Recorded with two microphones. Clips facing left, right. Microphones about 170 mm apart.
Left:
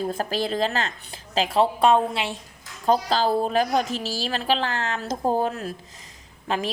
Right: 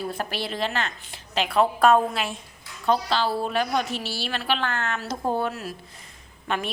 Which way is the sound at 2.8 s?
40° left (ahead or behind).